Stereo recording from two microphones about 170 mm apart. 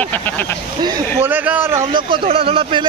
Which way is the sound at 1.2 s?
10° right (ahead or behind).